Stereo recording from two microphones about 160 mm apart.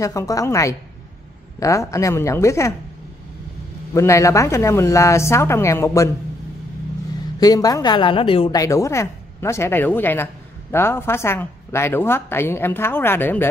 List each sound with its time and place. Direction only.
0.0 s a woman's voice: 20° left (ahead or behind)
3.9 s speech: 20° left (ahead or behind)
7.3 s a woman's voice: 25° left (ahead or behind)
8.5 s speech: 20° left (ahead or behind)